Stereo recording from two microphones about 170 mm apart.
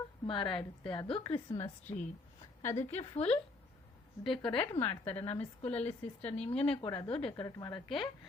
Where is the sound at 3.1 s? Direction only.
35° left (ahead or behind).